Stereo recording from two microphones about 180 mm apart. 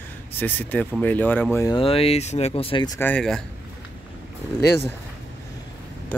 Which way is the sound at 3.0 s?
5° left (ahead or behind).